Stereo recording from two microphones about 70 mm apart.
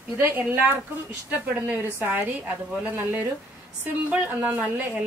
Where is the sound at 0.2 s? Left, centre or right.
Right.